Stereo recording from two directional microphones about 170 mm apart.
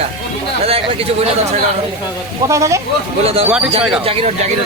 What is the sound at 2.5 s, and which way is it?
Speech, 20° right (ahead or behind).